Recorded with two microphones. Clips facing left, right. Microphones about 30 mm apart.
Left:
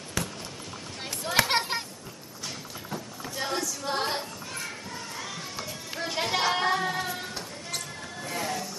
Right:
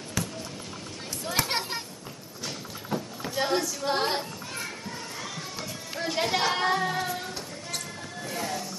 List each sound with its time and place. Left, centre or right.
0.2 s basketball bounce: centre
1.4 s children playing: centre
2.9 s a sound: centre
4.2 s children playing: centre